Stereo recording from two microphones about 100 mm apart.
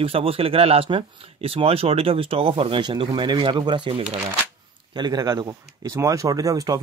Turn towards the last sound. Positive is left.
turn(degrees=-35)  # may be behind; listen again after turning